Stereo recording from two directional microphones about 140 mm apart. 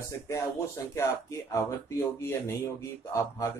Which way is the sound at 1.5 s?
20° left (ahead or behind).